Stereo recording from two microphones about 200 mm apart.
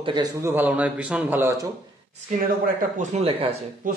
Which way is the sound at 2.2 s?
35° right (ahead or behind).